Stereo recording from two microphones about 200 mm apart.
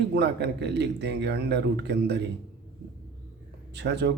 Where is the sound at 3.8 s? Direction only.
60° right (ahead or behind).